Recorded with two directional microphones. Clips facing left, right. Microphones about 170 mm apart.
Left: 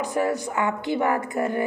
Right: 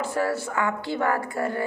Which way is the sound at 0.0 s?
15° left (ahead or behind).